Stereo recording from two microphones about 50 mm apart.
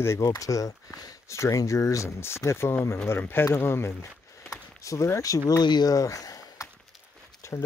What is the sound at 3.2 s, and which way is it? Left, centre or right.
Speech, left.